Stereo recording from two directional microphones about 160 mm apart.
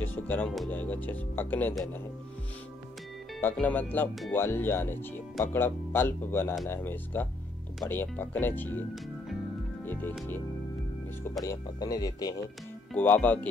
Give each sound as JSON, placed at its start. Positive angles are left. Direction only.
{"t": 0.0, "sound": "music", "side_deg": 10}
{"t": 0.7, "sound": "speech", "side_deg": 10}
{"t": 3.3, "sound": "speech", "side_deg": 10}
{"t": 11.4, "sound": "speech", "side_deg": 25}
{"t": 12.9, "sound": "speech", "side_deg": 10}